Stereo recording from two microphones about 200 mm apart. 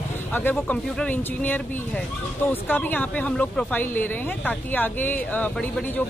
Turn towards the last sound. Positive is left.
turn(degrees=10)  # may be behind; listen again after turning